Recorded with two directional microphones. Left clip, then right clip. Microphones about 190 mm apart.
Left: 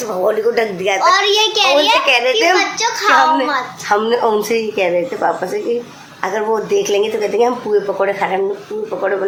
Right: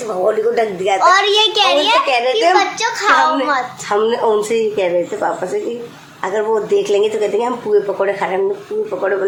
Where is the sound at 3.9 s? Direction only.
15° left (ahead or behind).